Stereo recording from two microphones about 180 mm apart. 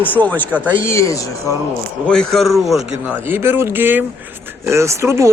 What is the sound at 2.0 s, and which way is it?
Speech, 5° left (ahead or behind).